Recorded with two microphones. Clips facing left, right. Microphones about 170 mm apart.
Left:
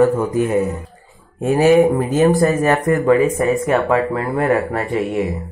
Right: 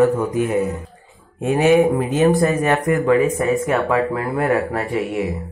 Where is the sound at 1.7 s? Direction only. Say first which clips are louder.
Left 2 dB; centre (ahead or behind).